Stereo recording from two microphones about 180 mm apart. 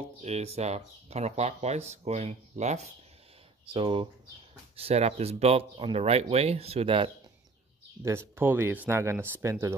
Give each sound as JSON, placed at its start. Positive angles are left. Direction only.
{"t": 0.2, "sound": "speech", "side_deg": -35}
{"t": 3.6, "sound": "speech", "side_deg": -30}
{"t": 8.0, "sound": "speech", "side_deg": -15}